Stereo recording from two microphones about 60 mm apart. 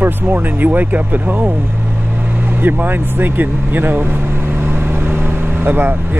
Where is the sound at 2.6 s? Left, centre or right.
Right.